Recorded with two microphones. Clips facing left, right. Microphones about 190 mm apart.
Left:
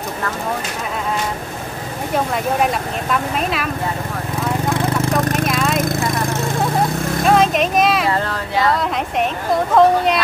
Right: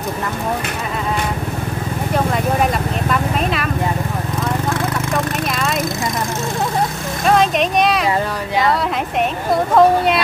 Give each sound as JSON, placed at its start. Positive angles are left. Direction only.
{"t": 2.1, "sound": "speech", "side_deg": 0}
{"t": 5.0, "sound": "a sound", "side_deg": 45}
{"t": 5.5, "sound": "speech", "side_deg": 0}
{"t": 7.2, "sound": "speech", "side_deg": 0}
{"t": 9.8, "sound": "speech", "side_deg": 0}